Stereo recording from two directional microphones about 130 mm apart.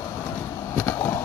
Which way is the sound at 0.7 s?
20° left (ahead or behind).